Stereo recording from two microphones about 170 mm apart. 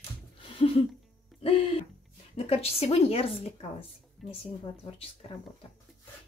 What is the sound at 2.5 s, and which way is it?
Speech, 35° left (ahead or behind).